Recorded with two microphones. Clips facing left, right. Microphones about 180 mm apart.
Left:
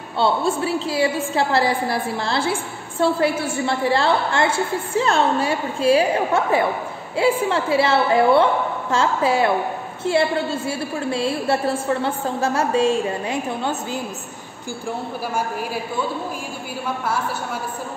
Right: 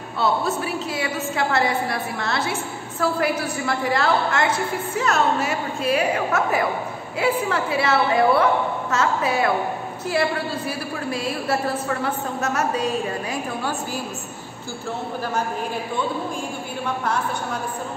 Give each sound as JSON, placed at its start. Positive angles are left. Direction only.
{"t": 0.2, "sound": "a woman's voice", "side_deg": 30}